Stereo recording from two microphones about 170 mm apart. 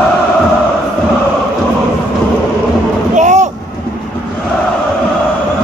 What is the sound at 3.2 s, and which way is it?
Vehicle, 45° right (ahead or behind).